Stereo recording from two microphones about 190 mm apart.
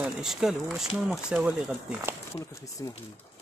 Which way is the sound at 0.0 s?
Centre (ahead or behind).